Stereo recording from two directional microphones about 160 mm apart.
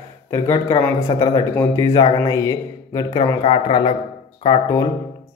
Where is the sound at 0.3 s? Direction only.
20° left (ahead or behind).